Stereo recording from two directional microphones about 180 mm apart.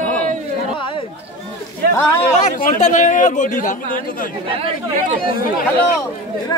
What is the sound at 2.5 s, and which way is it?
A man's voice, 40° left (ahead or behind).